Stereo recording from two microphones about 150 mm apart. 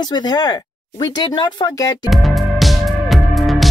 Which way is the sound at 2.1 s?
Centre (ahead or behind).